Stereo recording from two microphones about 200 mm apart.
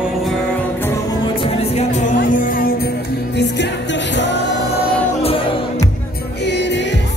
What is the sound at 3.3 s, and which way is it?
Music, 60° left (ahead or behind).